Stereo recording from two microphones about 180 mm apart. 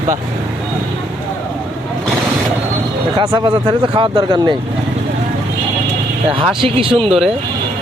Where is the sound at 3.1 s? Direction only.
25° right (ahead or behind).